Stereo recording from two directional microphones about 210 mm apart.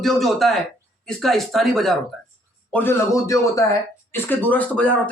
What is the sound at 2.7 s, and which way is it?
A man's voice, 10° left (ahead or behind).